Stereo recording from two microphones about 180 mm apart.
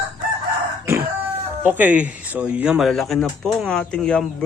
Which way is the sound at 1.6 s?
10° right (ahead or behind).